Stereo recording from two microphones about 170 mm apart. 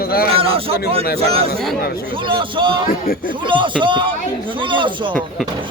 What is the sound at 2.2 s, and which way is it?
Speech, 30° right (ahead or behind).